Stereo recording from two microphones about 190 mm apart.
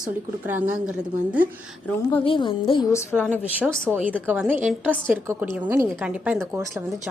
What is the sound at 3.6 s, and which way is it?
Speech, 5° left (ahead or behind).